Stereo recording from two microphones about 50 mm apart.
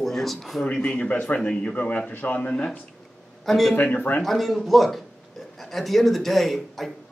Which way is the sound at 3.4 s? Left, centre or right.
Centre.